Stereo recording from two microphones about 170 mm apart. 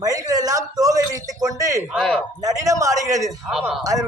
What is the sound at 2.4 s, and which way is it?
Speech, 20° right (ahead or behind).